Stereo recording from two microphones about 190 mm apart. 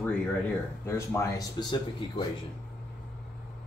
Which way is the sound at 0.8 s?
15° left (ahead or behind).